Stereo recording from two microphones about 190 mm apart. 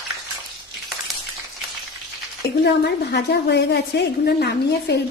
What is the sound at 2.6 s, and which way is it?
A woman's voice, 60° left (ahead or behind).